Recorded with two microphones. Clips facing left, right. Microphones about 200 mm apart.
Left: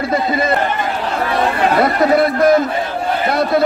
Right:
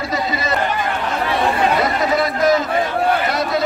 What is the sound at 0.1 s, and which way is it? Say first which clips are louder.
Speech: left 5 dB; 55° left (ahead or behind).